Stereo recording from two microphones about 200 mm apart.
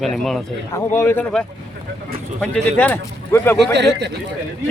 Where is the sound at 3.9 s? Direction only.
55° right (ahead or behind).